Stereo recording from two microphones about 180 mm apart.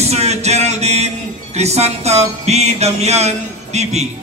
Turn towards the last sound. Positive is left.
turn(degrees=-35)  # may be behind; listen again after turning